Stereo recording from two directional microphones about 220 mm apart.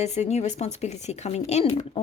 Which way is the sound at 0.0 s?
30° left (ahead or behind).